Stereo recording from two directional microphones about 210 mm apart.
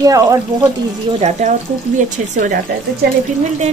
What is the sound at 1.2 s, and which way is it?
Speech, 35° right (ahead or behind).